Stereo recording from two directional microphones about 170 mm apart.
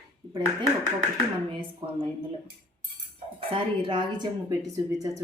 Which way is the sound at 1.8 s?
30° right (ahead or behind).